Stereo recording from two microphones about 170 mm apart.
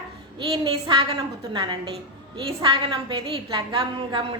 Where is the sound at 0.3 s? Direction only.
30° right (ahead or behind).